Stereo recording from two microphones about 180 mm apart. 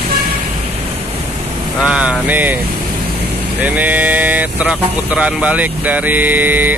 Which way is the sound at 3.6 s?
10° right (ahead or behind).